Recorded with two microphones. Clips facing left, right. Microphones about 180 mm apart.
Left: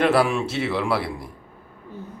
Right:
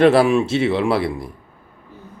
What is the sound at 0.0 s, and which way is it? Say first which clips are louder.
Speech: right 6 dB; 25° right (ahead or behind).